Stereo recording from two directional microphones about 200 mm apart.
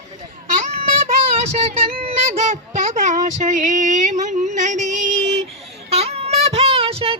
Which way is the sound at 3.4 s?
40° right (ahead or behind).